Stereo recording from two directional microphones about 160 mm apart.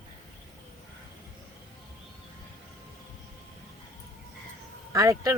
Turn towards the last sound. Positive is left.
turn(degrees=-20)  # may be behind; listen again after turning